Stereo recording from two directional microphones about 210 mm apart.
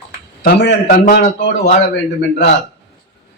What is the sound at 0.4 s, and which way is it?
Speech, 55° left (ahead or behind).